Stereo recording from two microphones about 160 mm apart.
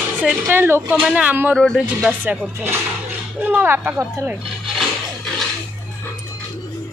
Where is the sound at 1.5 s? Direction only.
Centre (ahead or behind).